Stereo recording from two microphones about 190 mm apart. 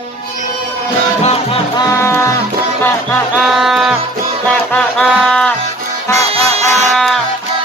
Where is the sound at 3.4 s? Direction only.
Centre (ahead or behind).